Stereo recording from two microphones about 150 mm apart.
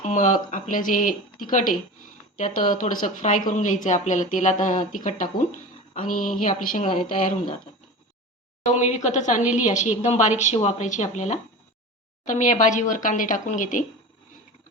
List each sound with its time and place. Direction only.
0.0 s speech: 55° left (ahead or behind)
8.6 s a woman's voice: 50° left (ahead or behind)